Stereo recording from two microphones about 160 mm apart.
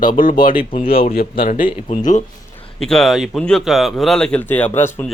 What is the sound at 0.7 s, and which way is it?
Speech, 35° left (ahead or behind).